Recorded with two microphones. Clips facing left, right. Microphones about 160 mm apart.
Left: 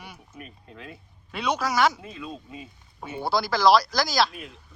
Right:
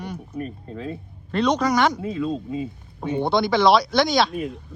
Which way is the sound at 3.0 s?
5° left (ahead or behind).